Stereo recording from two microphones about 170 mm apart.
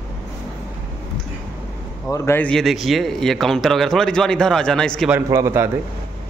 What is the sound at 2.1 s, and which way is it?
Speech, 15° left (ahead or behind).